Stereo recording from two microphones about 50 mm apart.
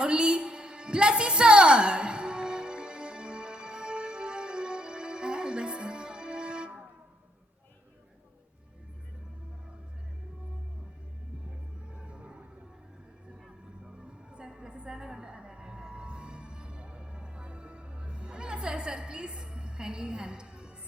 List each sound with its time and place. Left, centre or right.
0.0 s music: centre
11.9 s music: centre
14.3 s a sound: centre